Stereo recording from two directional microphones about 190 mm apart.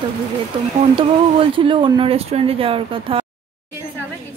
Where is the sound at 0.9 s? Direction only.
25° right (ahead or behind).